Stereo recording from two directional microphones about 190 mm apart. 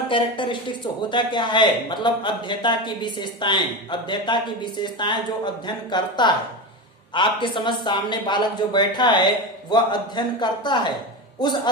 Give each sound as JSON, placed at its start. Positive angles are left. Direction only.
{"t": 0.1, "sound": "a man's voice", "side_deg": 25}